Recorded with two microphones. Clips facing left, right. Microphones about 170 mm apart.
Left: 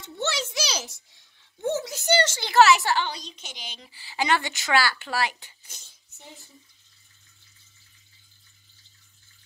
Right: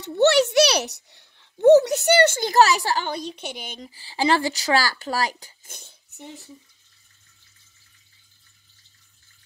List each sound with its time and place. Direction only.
0.0 s a child's voice: 65° right (ahead or behind); by 3.1 s 35° right (ahead or behind)
3.1 s speech: 60° right (ahead or behind); by 5.7 s 40° right (ahead or behind)
5.7 s speech: 60° right (ahead or behind)